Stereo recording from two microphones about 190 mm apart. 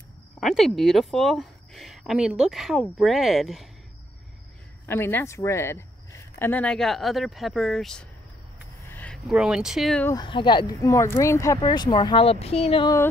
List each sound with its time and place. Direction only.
0.4 s speech: centre (ahead or behind)
4.8 s speech: 10° left (ahead or behind)
8.8 s a sound: 10° left (ahead or behind)
9.3 s speech: 5° right (ahead or behind)
10.0 s speech: 20° left (ahead or behind)